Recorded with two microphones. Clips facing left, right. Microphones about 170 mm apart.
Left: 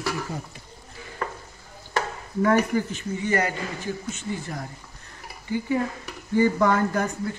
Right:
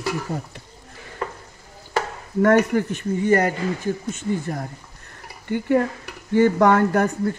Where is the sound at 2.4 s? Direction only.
65° right (ahead or behind); by 4.6 s 50° right (ahead or behind).